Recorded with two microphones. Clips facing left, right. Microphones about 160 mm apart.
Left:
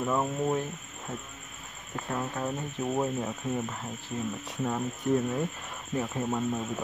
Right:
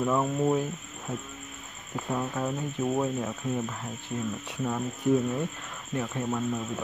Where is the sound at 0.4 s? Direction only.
10° right (ahead or behind).